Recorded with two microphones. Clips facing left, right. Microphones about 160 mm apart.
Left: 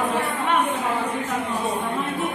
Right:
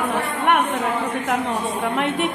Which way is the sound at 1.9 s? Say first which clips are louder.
Right 4 dB; 70° right (ahead or behind).